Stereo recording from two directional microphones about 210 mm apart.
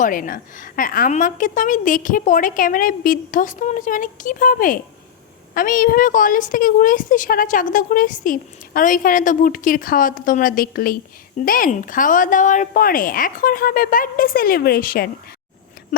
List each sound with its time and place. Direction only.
0.0 s a woman's voice: 40° left (ahead or behind)